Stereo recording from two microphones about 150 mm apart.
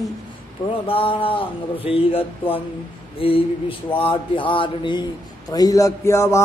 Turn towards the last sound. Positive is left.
turn(degrees=20)  # may be behind; listen again after turning